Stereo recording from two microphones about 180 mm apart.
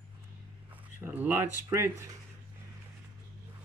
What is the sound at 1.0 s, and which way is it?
Speech, 10° right (ahead or behind).